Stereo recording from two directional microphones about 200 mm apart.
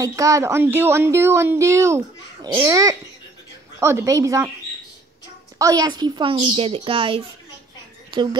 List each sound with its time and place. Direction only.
0.0 s speech: 15° right (ahead or behind)
5.6 s a woman's voice: 20° right (ahead or behind)